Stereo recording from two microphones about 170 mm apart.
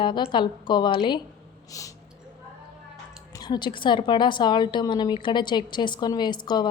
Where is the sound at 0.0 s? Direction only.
30° left (ahead or behind).